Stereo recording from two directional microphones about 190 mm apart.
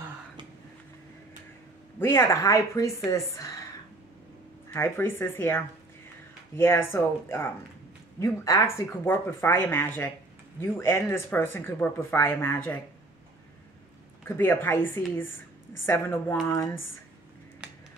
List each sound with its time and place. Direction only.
2.0 s speech: 15° left (ahead or behind)
4.6 s speech: 10° left (ahead or behind)
14.2 s speech: 10° left (ahead or behind)
17.6 s music: 5° right (ahead or behind)